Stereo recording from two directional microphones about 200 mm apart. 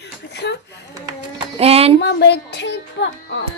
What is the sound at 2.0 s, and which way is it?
Speech, 60° left (ahead or behind).